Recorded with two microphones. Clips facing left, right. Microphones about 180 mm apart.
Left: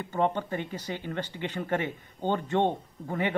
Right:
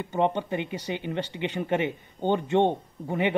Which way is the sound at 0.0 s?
20° right (ahead or behind).